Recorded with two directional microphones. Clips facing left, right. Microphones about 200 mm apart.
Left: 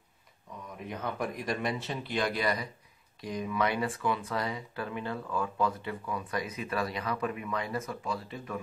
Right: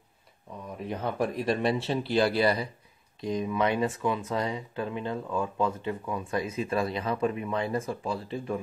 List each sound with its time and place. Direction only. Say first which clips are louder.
0.8 s speech: right 5 dB; 30° right (ahead or behind)